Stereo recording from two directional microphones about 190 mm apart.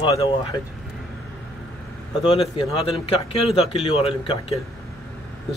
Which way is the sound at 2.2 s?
30° left (ahead or behind).